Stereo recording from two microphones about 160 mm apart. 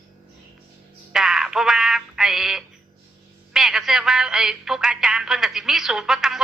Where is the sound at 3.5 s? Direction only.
Centre (ahead or behind).